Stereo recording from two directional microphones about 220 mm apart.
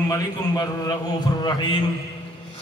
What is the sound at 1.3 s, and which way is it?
Speech, 15° left (ahead or behind).